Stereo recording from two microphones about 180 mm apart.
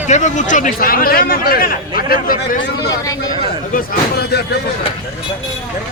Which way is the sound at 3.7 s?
55° left (ahead or behind).